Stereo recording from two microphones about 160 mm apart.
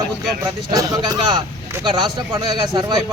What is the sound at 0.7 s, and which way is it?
A man's voice, 25° right (ahead or behind).